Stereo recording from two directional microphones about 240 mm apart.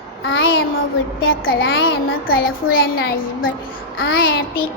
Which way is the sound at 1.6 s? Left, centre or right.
Left.